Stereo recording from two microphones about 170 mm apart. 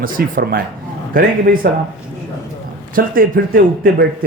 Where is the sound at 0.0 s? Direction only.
55° right (ahead or behind).